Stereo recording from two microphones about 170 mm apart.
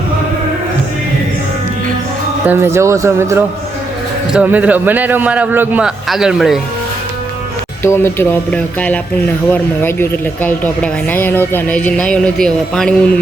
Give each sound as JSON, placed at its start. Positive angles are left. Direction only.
{"t": 2.5, "sound": "a man's voice", "side_deg": -15}
{"t": 7.9, "sound": "speech", "side_deg": 15}